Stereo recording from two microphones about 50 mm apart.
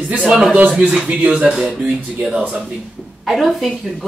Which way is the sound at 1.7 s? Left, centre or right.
Right.